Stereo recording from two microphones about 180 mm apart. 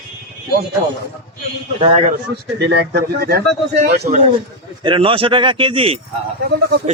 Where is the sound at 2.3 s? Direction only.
65° right (ahead or behind).